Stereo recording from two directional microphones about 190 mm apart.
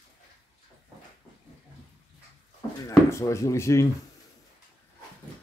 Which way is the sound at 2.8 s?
15° left (ahead or behind).